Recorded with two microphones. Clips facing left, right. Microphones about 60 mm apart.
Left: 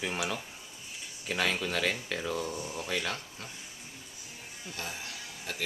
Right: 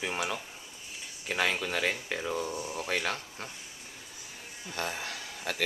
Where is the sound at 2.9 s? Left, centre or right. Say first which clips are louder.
Right 2 dB; right.